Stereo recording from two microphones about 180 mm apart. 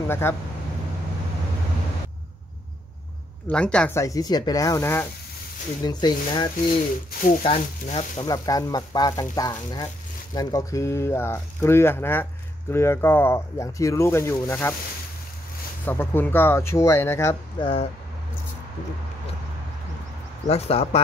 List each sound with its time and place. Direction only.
0.1 s speech: 15° left (ahead or behind)
3.4 s speech: 5° left (ahead or behind)
4.0 s speech: 20° left (ahead or behind)
8.3 s speech: 20° left (ahead or behind)
15.8 s speech: 10° left (ahead or behind)
17.6 s speech: 30° left (ahead or behind)
20.4 s speech: 35° left (ahead or behind)